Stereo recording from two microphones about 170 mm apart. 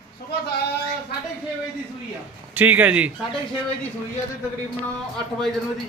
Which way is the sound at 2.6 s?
10° right (ahead or behind).